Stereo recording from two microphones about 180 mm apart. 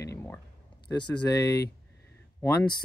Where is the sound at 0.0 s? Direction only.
15° left (ahead or behind).